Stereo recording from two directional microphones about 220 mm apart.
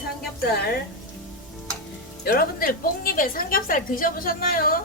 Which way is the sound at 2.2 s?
40° left (ahead or behind).